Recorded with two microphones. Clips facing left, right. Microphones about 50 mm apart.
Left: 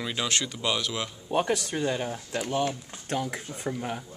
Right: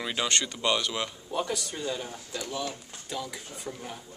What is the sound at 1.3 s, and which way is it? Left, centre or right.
Speech, left.